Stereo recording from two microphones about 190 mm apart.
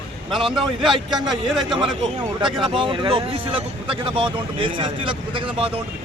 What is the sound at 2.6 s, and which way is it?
A man's voice, 25° right (ahead or behind).